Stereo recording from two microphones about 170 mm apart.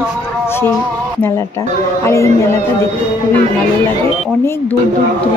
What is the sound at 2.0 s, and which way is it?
Speech, 15° left (ahead or behind).